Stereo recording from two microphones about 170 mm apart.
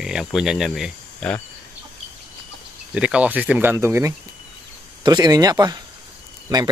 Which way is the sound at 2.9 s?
5° right (ahead or behind).